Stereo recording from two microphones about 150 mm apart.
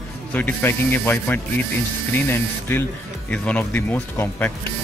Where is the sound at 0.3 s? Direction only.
10° left (ahead or behind).